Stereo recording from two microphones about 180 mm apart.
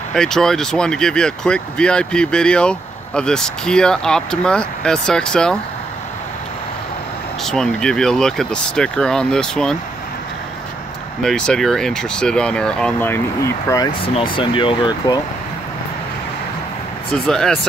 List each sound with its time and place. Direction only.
0.1 s speech: 5° left (ahead or behind)
7.4 s speech: 5° left (ahead or behind)
11.2 s speech: 5° left (ahead or behind)
14.0 s speech: 30° left (ahead or behind)
17.1 s speech: centre (ahead or behind)